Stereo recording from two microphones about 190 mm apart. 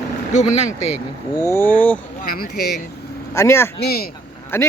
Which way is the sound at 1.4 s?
10° left (ahead or behind).